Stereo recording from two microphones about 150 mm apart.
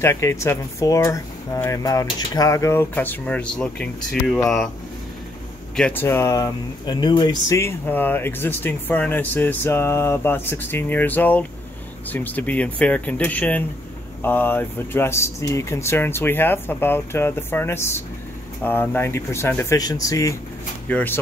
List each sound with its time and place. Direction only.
0.0 s speech: 15° left (ahead or behind)
5.8 s speech: 10° left (ahead or behind)